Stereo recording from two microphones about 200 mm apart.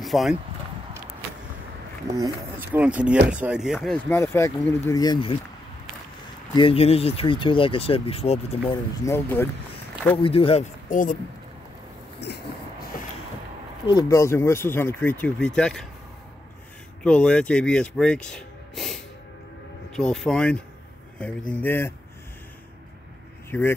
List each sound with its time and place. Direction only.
0.0 s speech: centre (ahead or behind)
2.0 s speech: 15° right (ahead or behind); by 4.0 s centre (ahead or behind)
4.1 s speech: 15° left (ahead or behind)
6.5 s speech: 25° left (ahead or behind)
9.0 s speech: 10° left (ahead or behind)
10.1 s speech: 25° left (ahead or behind)
10.9 s speech: 40° left (ahead or behind)
12.2 s a sound: 60° left (ahead or behind)
13.8 s speech: 20° left (ahead or behind)
17.0 s speech: 5° left (ahead or behind)